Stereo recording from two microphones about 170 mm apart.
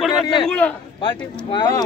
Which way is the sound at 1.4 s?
25° left (ahead or behind).